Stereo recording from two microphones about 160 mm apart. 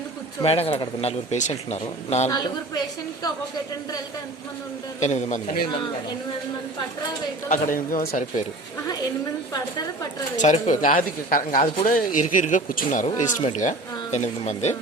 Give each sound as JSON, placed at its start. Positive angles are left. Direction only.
{"t": 0.4, "sound": "speech", "side_deg": 40}
{"t": 2.3, "sound": "a woman's voice", "side_deg": 25}
{"t": 4.9, "sound": "speech", "side_deg": 45}
{"t": 7.5, "sound": "speech", "side_deg": 55}
{"t": 9.5, "sound": "a woman's voice", "side_deg": 25}
{"t": 10.3, "sound": "speech", "side_deg": 50}